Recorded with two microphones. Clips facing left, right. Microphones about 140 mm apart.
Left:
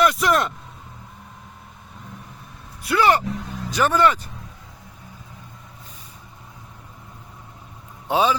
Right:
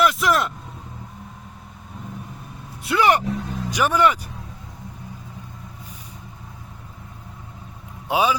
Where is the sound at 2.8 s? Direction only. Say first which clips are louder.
Even; 20° right (ahead or behind).